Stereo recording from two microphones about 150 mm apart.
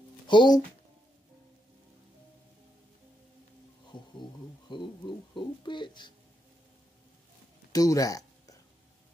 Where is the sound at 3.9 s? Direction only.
30° left (ahead or behind).